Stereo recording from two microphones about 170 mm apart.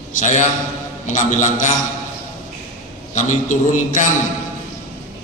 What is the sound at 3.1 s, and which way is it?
Speech, 45° left (ahead or behind).